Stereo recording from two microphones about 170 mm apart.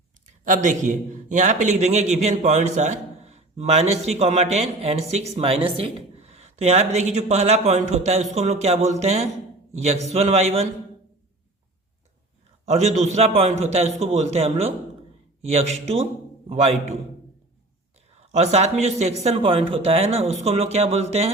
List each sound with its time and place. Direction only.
0.4 s a man's voice: 50° right (ahead or behind)
12.6 s a man's voice: 40° right (ahead or behind)
18.3 s a man's voice: 40° right (ahead or behind)